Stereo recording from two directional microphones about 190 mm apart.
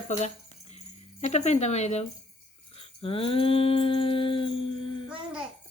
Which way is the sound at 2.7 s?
30° left (ahead or behind).